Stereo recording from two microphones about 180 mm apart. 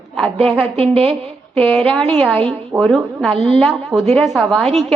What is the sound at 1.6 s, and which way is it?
A woman's voice, 5° left (ahead or behind).